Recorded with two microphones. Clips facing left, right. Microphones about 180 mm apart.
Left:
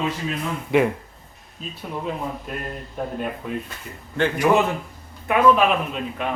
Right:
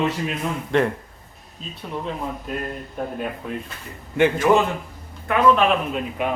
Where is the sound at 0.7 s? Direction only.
10° left (ahead or behind).